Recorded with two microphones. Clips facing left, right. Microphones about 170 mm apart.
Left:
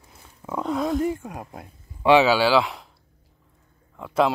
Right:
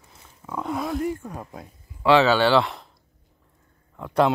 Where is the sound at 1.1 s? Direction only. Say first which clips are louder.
Even; 15° left (ahead or behind).